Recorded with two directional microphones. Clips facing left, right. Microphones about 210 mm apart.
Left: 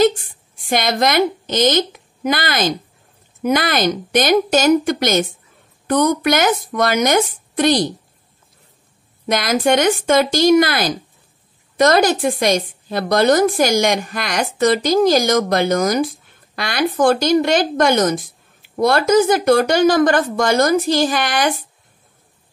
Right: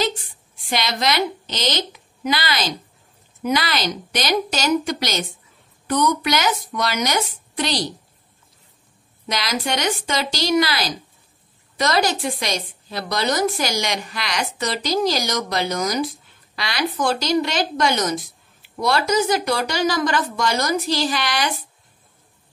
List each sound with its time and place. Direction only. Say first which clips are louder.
0.7 s a woman's voice: left 5 dB; 50° left (ahead or behind)
9.2 s a woman's voice: left 8 dB; 50° left (ahead or behind)